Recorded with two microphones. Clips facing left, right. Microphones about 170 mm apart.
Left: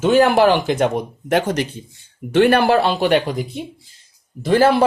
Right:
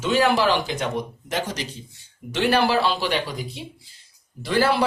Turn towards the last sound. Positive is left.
turn(degrees=50)  # may be behind; listen again after turning